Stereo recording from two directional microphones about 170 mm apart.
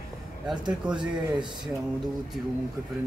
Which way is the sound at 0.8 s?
5° right (ahead or behind).